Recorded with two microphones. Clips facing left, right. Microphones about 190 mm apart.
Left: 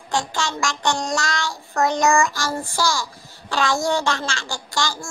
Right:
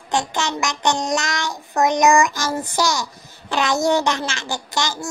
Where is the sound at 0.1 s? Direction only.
20° right (ahead or behind).